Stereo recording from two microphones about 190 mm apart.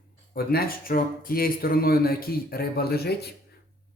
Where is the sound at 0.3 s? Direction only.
55° left (ahead or behind).